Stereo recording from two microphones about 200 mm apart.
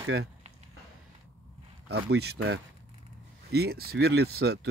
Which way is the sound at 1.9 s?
55° right (ahead or behind).